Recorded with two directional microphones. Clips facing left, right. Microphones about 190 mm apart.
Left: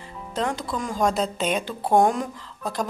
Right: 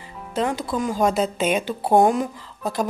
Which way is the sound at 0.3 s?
5° right (ahead or behind).